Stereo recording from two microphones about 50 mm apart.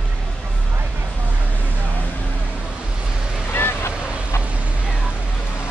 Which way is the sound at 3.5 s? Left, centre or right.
Left.